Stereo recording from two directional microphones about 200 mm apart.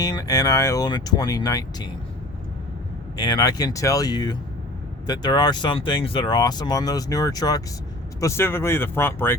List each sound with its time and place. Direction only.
0.0 s speech: 20° left (ahead or behind)
3.2 s speech: 20° left (ahead or behind)